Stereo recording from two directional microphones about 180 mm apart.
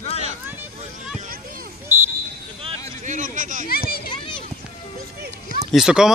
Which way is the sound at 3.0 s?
45° right (ahead or behind).